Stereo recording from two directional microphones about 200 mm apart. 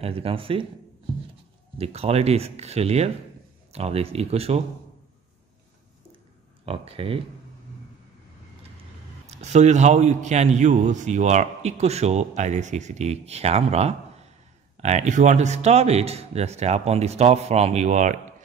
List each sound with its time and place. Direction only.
0.0 s speech: 30° right (ahead or behind)
1.8 s a man's voice: 30° right (ahead or behind)
6.6 s speech: 30° right (ahead or behind)
9.4 s a man's voice: 35° right (ahead or behind)